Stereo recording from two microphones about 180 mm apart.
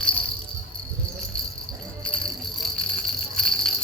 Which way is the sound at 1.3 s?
5° left (ahead or behind).